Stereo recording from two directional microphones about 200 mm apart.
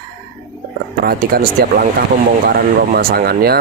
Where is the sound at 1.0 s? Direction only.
50° right (ahead or behind).